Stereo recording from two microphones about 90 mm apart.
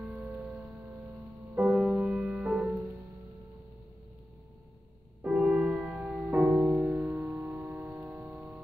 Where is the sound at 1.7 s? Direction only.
5° right (ahead or behind).